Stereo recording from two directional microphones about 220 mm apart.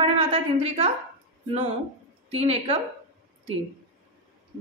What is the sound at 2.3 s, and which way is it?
Speech, 30° right (ahead or behind).